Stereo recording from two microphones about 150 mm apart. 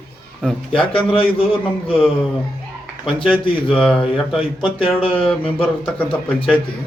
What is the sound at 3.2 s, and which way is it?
Speech, 35° left (ahead or behind).